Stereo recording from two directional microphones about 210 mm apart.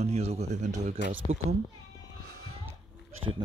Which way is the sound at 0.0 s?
30° right (ahead or behind).